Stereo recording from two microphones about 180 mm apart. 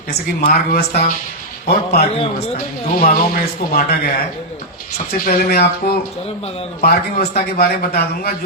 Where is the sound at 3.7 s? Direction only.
55° left (ahead or behind).